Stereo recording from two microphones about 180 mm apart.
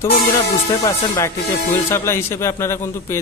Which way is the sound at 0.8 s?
20° left (ahead or behind).